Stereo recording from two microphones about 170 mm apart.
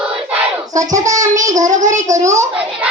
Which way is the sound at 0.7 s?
20° right (ahead or behind).